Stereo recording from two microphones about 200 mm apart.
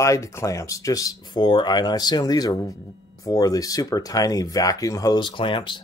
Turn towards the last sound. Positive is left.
turn(degrees=25)  # may be behind; listen again after turning